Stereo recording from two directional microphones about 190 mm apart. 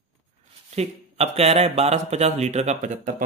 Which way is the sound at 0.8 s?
35° right (ahead or behind).